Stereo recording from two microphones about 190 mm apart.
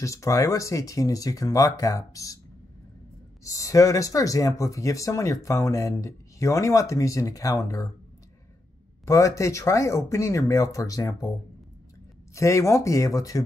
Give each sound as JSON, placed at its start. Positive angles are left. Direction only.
{"t": 0.0, "sound": "speech", "side_deg": 15}
{"t": 3.4, "sound": "speech", "side_deg": 15}
{"t": 9.0, "sound": "speech", "side_deg": 15}
{"t": 12.4, "sound": "speech", "side_deg": 15}